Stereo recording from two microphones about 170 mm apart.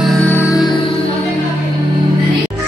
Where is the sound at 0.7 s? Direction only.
30° left (ahead or behind).